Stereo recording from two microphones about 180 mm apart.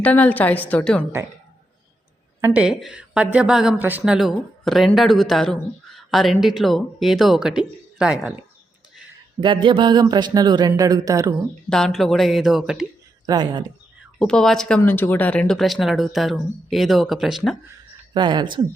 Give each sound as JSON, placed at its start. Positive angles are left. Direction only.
{"t": 0.0, "sound": "a woman's voice", "side_deg": 10}
{"t": 2.4, "sound": "a woman's voice", "side_deg": -5}
{"t": 9.4, "sound": "speech", "side_deg": -25}
{"t": 11.7, "sound": "a woman's voice", "side_deg": 0}
{"t": 13.2, "sound": "speech", "side_deg": -25}
{"t": 14.2, "sound": "a woman's voice", "side_deg": 5}
{"t": 18.1, "sound": "speech", "side_deg": -25}